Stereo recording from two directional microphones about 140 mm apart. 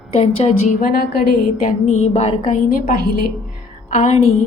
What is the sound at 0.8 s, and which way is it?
Speech, 80° left.